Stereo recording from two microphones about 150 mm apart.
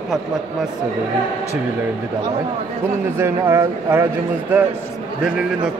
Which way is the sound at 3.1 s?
15° right (ahead or behind).